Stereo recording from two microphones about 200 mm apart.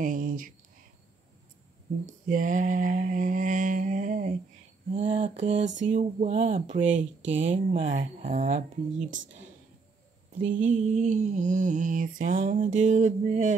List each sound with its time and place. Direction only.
0.0 s speech: 40° right (ahead or behind)
2.0 s mantra: 40° right (ahead or behind)
5.0 s mantra: 25° right (ahead or behind)
7.2 s speech: 10° right (ahead or behind)
7.5 s mantra: 35° right (ahead or behind)
10.4 s mantra: 40° right (ahead or behind)